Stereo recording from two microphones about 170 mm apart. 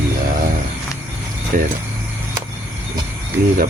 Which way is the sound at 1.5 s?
55° right (ahead or behind).